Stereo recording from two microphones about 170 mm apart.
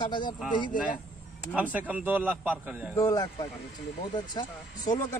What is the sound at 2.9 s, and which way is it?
Speech, 20° left (ahead or behind).